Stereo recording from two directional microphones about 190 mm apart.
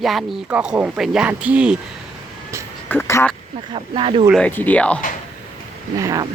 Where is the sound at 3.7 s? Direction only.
30° right (ahead or behind).